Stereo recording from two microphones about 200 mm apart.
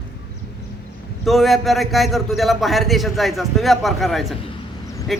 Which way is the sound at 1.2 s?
Centre (ahead or behind).